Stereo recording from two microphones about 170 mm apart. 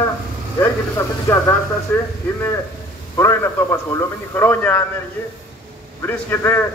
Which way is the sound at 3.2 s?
15° left (ahead or behind).